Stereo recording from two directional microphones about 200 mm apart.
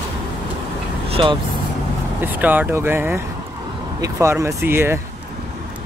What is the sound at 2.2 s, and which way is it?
Speech, 10° right (ahead or behind).